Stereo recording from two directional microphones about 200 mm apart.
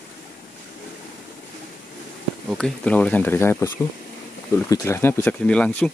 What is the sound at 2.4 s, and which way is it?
Speech, 5° left (ahead or behind).